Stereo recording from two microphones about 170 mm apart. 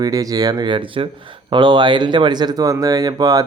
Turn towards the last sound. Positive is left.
turn(degrees=-20)  # may be behind; listen again after turning